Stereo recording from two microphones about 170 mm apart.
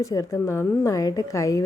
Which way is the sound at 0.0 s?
20° left (ahead or behind).